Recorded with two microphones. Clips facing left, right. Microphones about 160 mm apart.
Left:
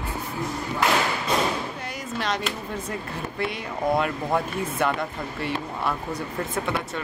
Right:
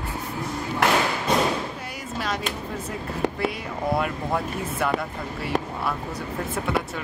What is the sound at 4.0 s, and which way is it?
Speech, 5° right (ahead or behind).